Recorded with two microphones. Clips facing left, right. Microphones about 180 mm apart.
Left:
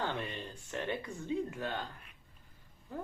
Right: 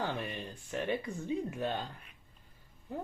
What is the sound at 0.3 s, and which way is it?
Speech, 15° right (ahead or behind).